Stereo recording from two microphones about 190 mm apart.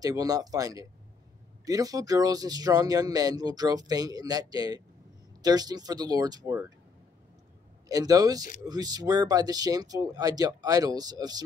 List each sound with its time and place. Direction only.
0.0 s speech: 20° right (ahead or behind)
7.9 s speech: 20° right (ahead or behind)